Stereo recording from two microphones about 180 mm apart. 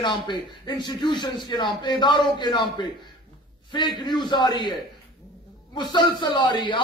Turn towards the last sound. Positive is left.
turn(degrees=25)  # may be behind; listen again after turning